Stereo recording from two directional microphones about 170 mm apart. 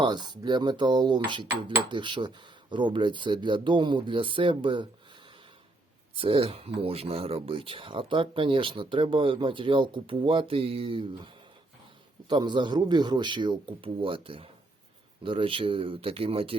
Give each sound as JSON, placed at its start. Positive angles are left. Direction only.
{"t": 0.0, "sound": "speech", "side_deg": -25}
{"t": 6.1, "sound": "speech", "side_deg": -30}
{"t": 12.3, "sound": "speech", "side_deg": -25}